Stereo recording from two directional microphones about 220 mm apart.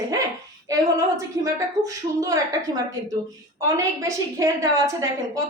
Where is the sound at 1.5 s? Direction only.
15° right (ahead or behind).